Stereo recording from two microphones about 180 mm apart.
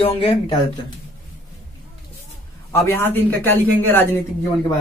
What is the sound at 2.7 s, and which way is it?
Speech, 15° left (ahead or behind).